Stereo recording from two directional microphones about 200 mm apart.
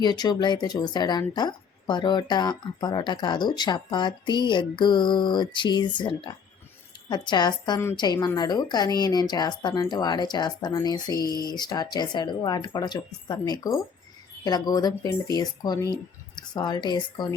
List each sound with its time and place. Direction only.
0.0 s a woman's voice: 20° left (ahead or behind)